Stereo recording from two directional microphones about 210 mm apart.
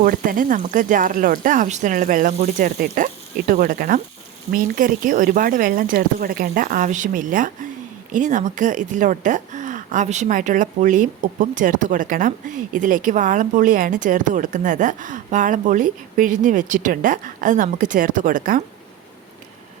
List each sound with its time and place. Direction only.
0.0 s speech: 40° right (ahead or behind)